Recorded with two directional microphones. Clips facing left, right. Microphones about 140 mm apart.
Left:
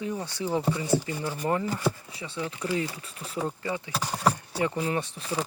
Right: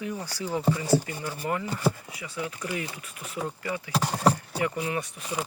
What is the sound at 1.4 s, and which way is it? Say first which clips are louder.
Speech: even; 30° left (ahead or behind).